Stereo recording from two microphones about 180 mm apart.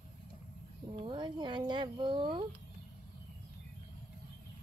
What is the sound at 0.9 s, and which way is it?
Speech, 25° right (ahead or behind).